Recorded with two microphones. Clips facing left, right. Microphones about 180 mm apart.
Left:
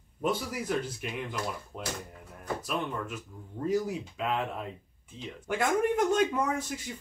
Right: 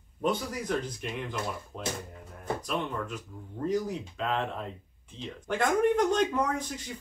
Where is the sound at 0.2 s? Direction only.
5° left (ahead or behind).